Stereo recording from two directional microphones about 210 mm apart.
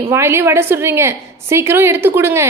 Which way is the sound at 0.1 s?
10° right (ahead or behind).